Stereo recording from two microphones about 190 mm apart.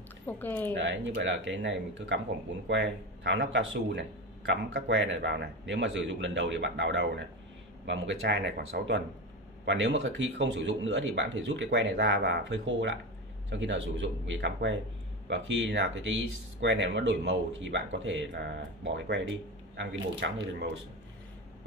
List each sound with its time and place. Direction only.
0.3 s speech: 10° left (ahead or behind)
0.7 s speech: 70° right (ahead or behind)
9.7 s speech: 80° right
16.6 s speech: 70° right (ahead or behind)
20.5 s speech: 60° right (ahead or behind)